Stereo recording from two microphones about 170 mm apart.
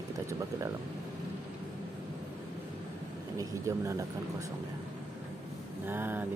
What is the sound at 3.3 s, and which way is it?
Speech, 15° right (ahead or behind).